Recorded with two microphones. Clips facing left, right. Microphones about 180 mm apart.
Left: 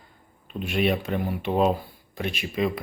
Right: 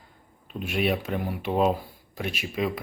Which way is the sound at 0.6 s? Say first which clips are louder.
Left 2 dB; 5° right (ahead or behind).